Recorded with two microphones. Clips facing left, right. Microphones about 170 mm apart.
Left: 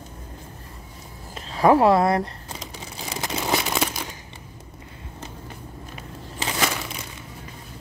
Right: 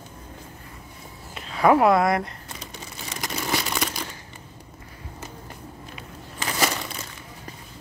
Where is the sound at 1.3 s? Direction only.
30° left (ahead or behind).